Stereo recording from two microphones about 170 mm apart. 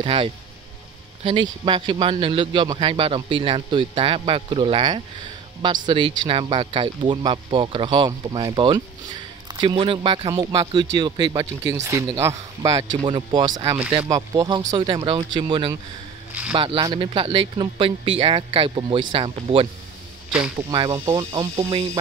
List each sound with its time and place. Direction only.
0.0 s a man's voice: 30° right (ahead or behind)
16.3 s a sound: 10° right (ahead or behind)
16.5 s a man's voice: 30° right (ahead or behind)